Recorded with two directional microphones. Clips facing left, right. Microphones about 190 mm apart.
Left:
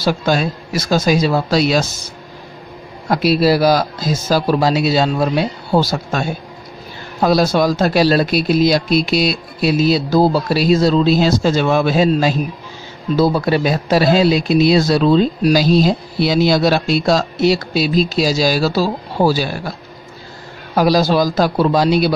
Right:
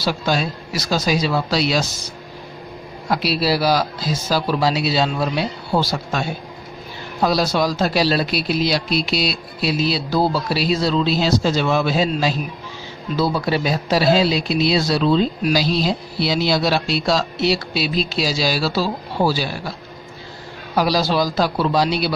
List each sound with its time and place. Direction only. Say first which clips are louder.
0.0 s speech: left 4 dB; 50° left (ahead or behind)
3.1 s speech: left 6 dB; 50° left (ahead or behind)
20.7 s speech: left 5 dB; 50° left (ahead or behind)